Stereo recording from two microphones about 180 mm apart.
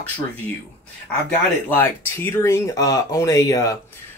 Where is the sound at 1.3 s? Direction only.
10° left (ahead or behind).